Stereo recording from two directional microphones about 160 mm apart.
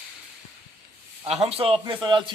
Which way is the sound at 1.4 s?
35° right (ahead or behind).